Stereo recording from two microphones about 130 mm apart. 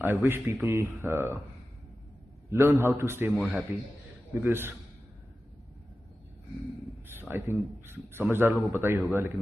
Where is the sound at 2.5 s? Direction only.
20° right (ahead or behind).